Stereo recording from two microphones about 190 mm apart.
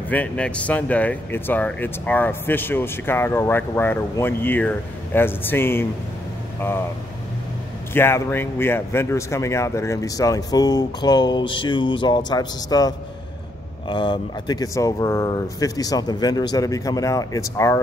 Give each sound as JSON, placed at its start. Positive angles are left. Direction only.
{"t": 0.1, "sound": "speech", "side_deg": 5}
{"t": 7.9, "sound": "speech", "side_deg": 10}